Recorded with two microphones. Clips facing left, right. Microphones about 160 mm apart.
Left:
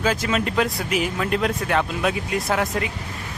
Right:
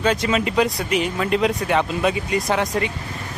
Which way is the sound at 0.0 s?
Centre (ahead or behind).